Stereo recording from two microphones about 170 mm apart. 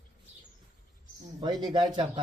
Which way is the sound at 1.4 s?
25° right (ahead or behind).